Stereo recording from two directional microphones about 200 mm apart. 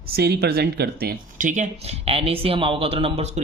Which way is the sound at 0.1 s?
50° right (ahead or behind).